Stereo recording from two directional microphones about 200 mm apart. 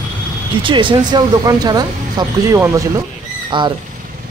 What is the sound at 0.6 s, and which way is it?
Speech, 25° right (ahead or behind).